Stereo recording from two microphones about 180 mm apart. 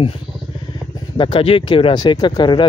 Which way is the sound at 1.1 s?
30° left (ahead or behind).